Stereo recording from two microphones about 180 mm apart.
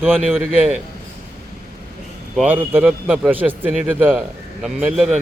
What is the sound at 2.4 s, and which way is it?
A man's voice, 10° right (ahead or behind).